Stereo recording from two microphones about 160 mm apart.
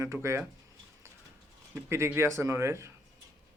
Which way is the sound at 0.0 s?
15° right (ahead or behind).